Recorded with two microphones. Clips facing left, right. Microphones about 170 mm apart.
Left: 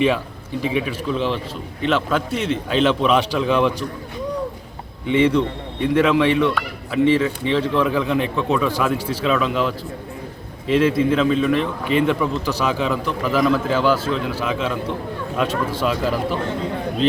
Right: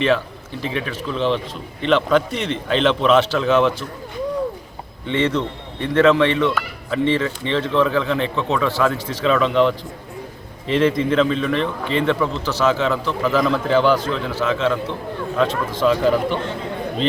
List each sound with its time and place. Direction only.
0.6 s a man's voice: 10° left (ahead or behind)
5.0 s a man's voice: 10° left (ahead or behind)